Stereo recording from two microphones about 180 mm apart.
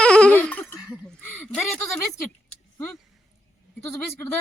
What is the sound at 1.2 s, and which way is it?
Speech, 10° left (ahead or behind).